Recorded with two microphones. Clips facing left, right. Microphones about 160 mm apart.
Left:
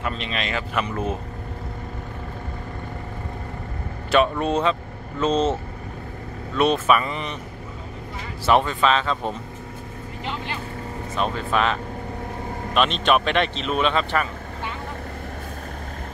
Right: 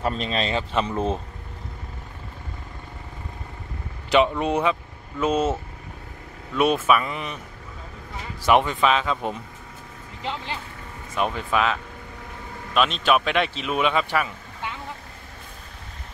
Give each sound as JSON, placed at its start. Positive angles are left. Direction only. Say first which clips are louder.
{"t": 0.0, "sound": "speech", "louder": "right 3 dB", "side_deg": -35}
{"t": 4.1, "sound": "speech", "louder": "even", "side_deg": -15}
{"t": 8.5, "sound": "speech", "louder": "even", "side_deg": -15}
{"t": 11.1, "sound": "speech", "louder": "even", "side_deg": -15}